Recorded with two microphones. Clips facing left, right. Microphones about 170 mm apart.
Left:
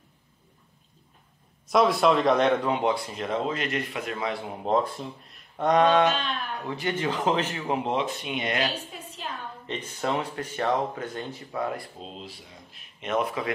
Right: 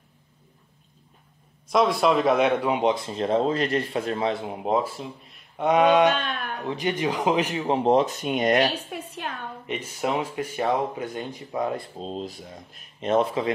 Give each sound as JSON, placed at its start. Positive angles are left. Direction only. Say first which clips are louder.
{"t": 1.7, "sound": "a man's voice", "louder": "even", "side_deg": 0}
{"t": 4.6, "sound": "speech", "louder": "even", "side_deg": -5}
{"t": 6.1, "sound": "speech", "louder": "right 1 dB", "side_deg": -50}
{"t": 6.6, "sound": "speech", "louder": "right 4 dB", "side_deg": -20}
{"t": 7.6, "sound": "speech", "louder": "right 6 dB", "side_deg": -35}
{"t": 8.9, "sound": "a woman's voice", "louder": "right 5 dB", "side_deg": -60}
{"t": 9.7, "sound": "speech", "louder": "right 2 dB", "side_deg": -10}
{"t": 12.0, "sound": "speech", "louder": "right 8 dB", "side_deg": -40}